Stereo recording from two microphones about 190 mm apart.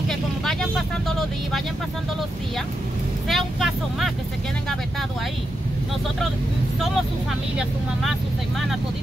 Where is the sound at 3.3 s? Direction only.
Centre (ahead or behind).